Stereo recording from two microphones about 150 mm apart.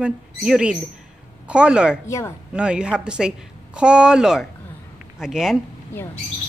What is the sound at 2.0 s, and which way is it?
Speech, 20° left (ahead or behind).